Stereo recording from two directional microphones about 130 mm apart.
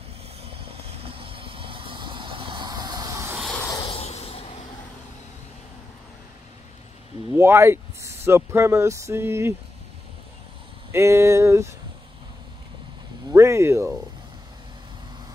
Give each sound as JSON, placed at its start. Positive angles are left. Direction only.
{"t": 1.0, "sound": "vehicle", "side_deg": -45}
{"t": 3.7, "sound": "a sound", "side_deg": 45}
{"t": 7.3, "sound": "speech", "side_deg": -20}
{"t": 10.9, "sound": "speech", "side_deg": -20}
{"t": 13.3, "sound": "speech", "side_deg": -20}